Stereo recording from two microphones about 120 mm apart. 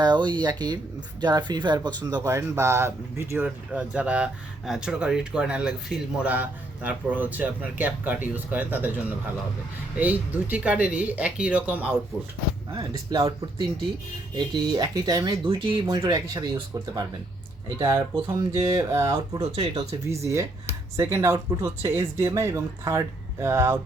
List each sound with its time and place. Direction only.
0.0 s speech: 40° right (ahead or behind)
2.2 s speech: 25° right (ahead or behind)
3.7 s speech: 10° right (ahead or behind)
12.7 s speech: 35° right (ahead or behind)
14.3 s speech: 40° right (ahead or behind)
18.8 s speech: 25° right (ahead or behind)
19.5 s speech: 60° right (ahead or behind)
20.1 s speech: 25° right (ahead or behind)